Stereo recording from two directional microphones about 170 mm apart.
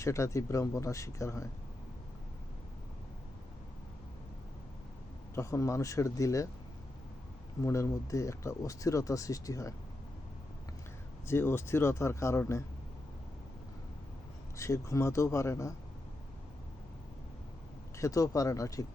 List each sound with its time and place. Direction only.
0.0 s speech: 15° left (ahead or behind)
5.3 s speech: 15° left (ahead or behind)
7.6 s speech: 15° left (ahead or behind)
11.3 s speech: 15° left (ahead or behind)
14.5 s speech: 15° left (ahead or behind)
17.9 s speech: 20° left (ahead or behind)